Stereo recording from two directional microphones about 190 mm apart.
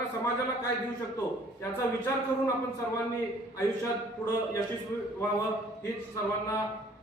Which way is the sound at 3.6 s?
15° left (ahead or behind).